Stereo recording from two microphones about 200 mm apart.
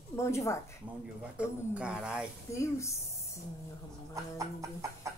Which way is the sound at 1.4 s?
5° right (ahead or behind).